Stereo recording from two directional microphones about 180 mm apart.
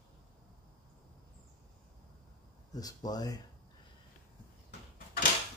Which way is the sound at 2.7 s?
20° left (ahead or behind).